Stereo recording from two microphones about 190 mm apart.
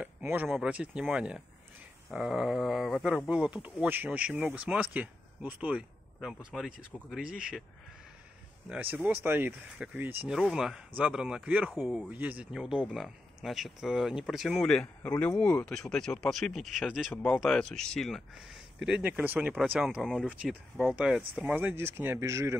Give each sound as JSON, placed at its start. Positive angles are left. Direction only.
{"t": 0.0, "sound": "a sound", "side_deg": -10}
{"t": 0.5, "sound": "speech", "side_deg": -5}
{"t": 8.9, "sound": "speech", "side_deg": -10}